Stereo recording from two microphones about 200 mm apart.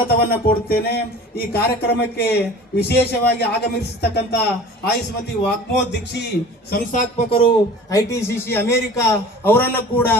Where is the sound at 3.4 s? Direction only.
55° left (ahead or behind).